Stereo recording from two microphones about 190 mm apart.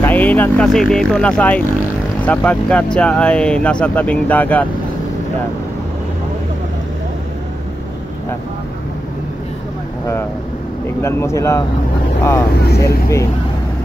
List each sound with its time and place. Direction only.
0.0 s speech: 10° left (ahead or behind)
11.0 s speech: 15° left (ahead or behind)
12.6 s speech: 55° left (ahead or behind)